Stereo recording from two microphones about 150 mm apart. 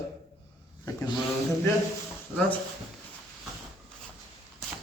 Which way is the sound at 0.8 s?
25° left (ahead or behind).